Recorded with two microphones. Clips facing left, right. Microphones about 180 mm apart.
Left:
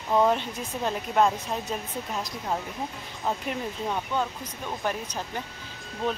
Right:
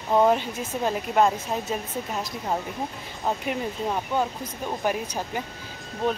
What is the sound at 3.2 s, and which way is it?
Speech, 5° right (ahead or behind).